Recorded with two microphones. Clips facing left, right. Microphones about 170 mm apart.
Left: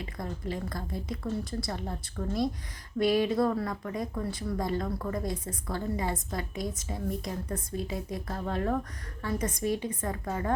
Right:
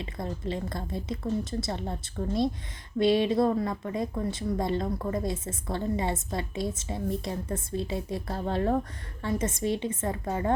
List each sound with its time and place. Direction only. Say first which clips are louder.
0.0 s speech: right 3 dB; 25° right (ahead or behind)